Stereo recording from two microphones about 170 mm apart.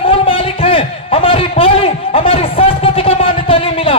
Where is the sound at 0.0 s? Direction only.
35° left (ahead or behind).